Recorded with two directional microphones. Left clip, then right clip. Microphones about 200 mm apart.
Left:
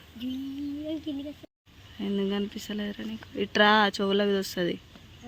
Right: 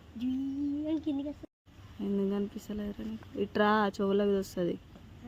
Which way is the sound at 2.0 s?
5° left (ahead or behind).